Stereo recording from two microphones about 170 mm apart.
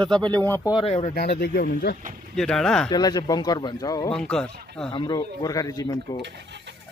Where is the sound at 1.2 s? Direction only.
65° left (ahead or behind).